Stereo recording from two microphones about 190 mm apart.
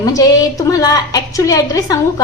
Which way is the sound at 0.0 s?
20° left (ahead or behind).